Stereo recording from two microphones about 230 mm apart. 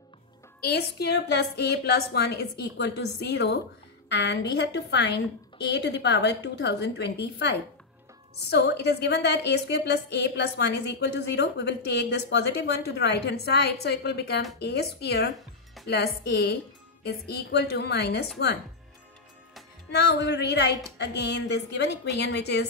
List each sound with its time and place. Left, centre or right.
0.6 s a woman's voice: left
19.9 s a woman's voice: left